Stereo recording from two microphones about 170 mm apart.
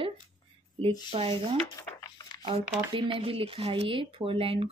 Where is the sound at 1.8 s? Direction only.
15° left (ahead or behind).